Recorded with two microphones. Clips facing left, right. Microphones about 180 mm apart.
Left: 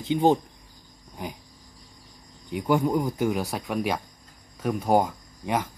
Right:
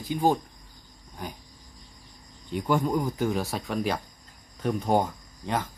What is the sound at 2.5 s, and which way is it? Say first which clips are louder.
Speech: left 2 dB; 15° left (ahead or behind).